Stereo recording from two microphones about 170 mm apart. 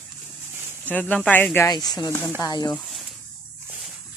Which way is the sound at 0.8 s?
10° left (ahead or behind).